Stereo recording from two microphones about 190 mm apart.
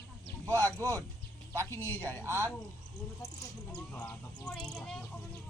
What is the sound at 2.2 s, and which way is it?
Speech, 15° right (ahead or behind).